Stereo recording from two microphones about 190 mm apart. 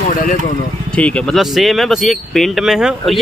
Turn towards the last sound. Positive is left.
turn(degrees=0)  # may be behind; listen again after turning